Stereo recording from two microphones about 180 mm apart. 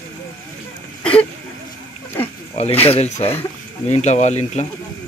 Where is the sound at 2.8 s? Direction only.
35° left (ahead or behind).